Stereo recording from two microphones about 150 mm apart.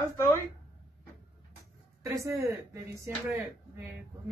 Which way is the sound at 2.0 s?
20° right (ahead or behind).